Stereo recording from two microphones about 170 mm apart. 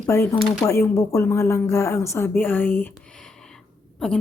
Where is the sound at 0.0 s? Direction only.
15° left (ahead or behind).